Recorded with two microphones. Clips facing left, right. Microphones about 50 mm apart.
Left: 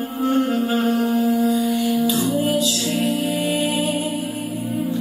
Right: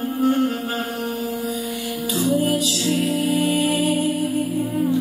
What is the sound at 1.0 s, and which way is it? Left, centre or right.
Mantra, left.